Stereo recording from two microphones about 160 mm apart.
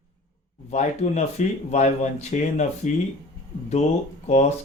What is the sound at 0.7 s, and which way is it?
Speech, 45° left (ahead or behind).